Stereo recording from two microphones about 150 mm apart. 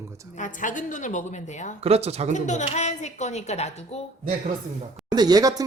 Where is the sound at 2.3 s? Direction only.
50° left (ahead or behind).